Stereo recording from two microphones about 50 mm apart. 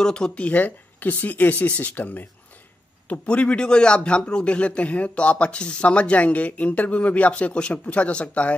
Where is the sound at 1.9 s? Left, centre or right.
Left.